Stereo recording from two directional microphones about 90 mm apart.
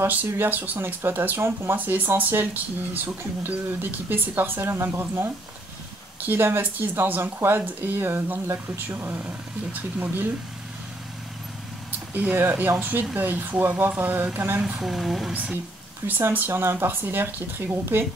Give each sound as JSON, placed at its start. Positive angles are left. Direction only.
{"t": 0.0, "sound": "speech", "side_deg": -20}
{"t": 12.1, "sound": "speech", "side_deg": -20}
{"t": 14.6, "sound": "speech", "side_deg": -5}
{"t": 16.1, "sound": "speech", "side_deg": -20}